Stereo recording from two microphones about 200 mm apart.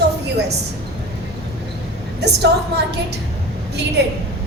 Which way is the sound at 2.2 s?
55° right (ahead or behind).